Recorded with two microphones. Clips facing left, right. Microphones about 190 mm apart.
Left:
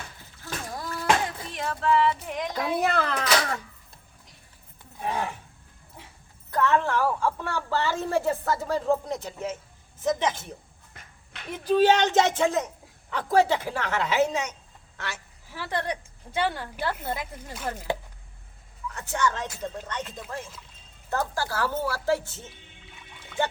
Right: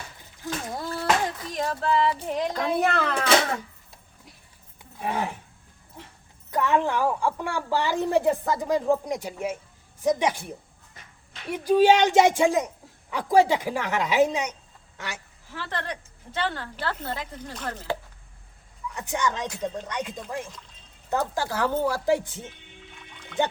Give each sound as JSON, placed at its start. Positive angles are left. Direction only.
{"t": 0.4, "sound": "a sound", "side_deg": -25}
{"t": 1.5, "sound": "music", "side_deg": -35}
{"t": 2.5, "sound": "a woman's voice", "side_deg": 5}
{"t": 3.2, "sound": "cat", "side_deg": -25}
{"t": 6.5, "sound": "a woman's voice", "side_deg": -15}
{"t": 15.5, "sound": "a woman's voice", "side_deg": 15}
{"t": 18.9, "sound": "a woman's voice", "side_deg": -15}